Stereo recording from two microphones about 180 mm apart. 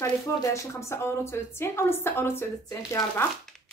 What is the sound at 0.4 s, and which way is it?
A woman's voice, 15° left (ahead or behind).